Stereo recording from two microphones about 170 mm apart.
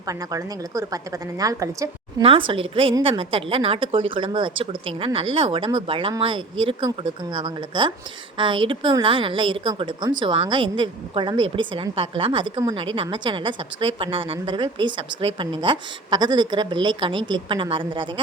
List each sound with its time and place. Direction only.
0.1 s a woman's voice: 20° right (ahead or behind)
2.2 s a woman's voice: 30° right (ahead or behind)